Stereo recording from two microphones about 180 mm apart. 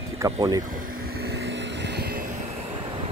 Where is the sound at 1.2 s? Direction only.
65° right (ahead or behind).